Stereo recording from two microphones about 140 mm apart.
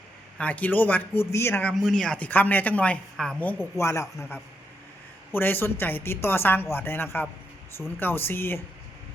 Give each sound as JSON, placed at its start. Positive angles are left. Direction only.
{"t": 0.3, "sound": "speech", "side_deg": 10}
{"t": 1.7, "sound": "speech", "side_deg": 0}